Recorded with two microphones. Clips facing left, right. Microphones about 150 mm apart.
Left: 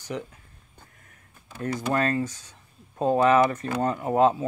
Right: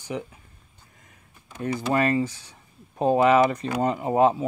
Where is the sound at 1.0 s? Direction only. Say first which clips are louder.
Even; 10° right (ahead or behind).